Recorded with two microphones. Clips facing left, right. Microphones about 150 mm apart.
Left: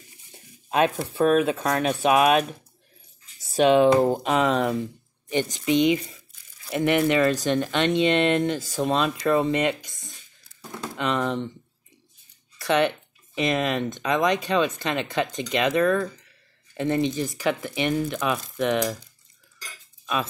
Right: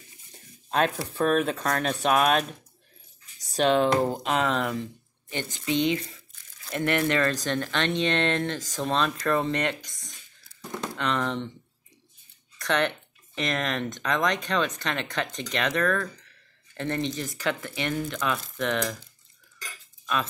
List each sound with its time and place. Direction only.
0.7 s a sound: 10° left (ahead or behind)
1.1 s speech: 5° left (ahead or behind)
12.5 s speech: 10° left (ahead or behind)